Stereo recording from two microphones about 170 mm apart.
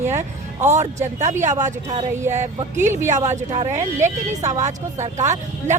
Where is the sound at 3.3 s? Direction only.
45° right (ahead or behind).